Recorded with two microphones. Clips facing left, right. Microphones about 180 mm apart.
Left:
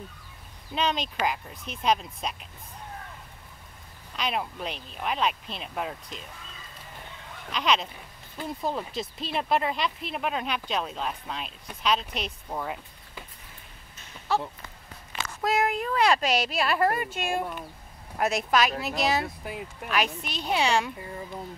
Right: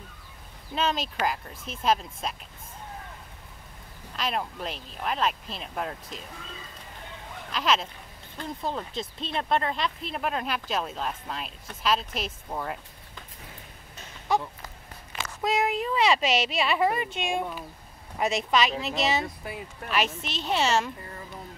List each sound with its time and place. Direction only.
0.7 s speech: centre (ahead or behind)
4.2 s speech: centre (ahead or behind)
7.5 s speech: centre (ahead or behind)
15.4 s speech: centre (ahead or behind)
19.4 s speech: 15° left (ahead or behind)
19.9 s speech: centre (ahead or behind)